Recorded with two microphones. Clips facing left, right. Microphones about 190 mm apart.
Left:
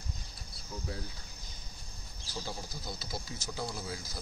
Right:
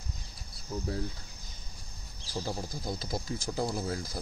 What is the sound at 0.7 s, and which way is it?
Speech, 40° right (ahead or behind).